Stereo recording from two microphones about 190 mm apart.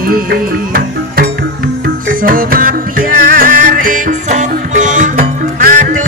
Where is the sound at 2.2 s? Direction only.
50° right (ahead or behind).